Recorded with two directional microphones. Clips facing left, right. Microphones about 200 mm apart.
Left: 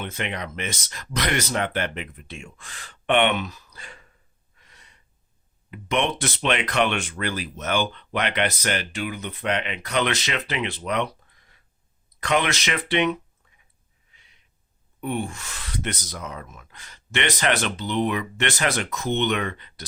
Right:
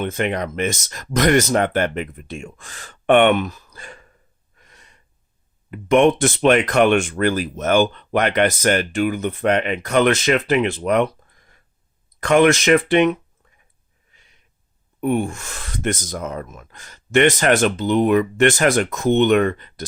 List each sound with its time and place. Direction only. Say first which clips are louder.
0.0 s speech: right 9 dB; 45° right (ahead or behind)
4.5 s gasp: right 4 dB; 50° right (ahead or behind)
5.7 s speech: right 10 dB; 50° right (ahead or behind)
14.1 s wheeze: right 4 dB; 45° right (ahead or behind)
15.0 s speech: right 8 dB; 50° right (ahead or behind)